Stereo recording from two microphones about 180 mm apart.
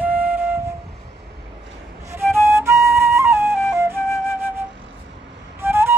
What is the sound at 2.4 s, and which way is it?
Flute, 15° right (ahead or behind).